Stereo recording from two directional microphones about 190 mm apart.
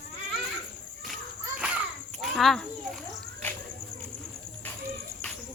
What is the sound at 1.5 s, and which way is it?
Children playing, 5° right (ahead or behind).